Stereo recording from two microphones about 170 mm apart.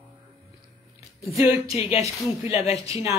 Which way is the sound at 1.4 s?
35° left (ahead or behind).